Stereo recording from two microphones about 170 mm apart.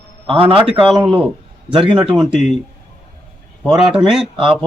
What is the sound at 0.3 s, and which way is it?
Speech, 30° right (ahead or behind).